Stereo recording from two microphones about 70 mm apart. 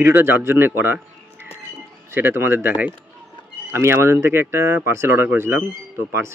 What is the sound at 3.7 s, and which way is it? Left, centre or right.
Speech, right.